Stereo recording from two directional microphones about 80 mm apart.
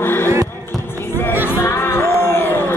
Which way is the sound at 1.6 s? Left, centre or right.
Left.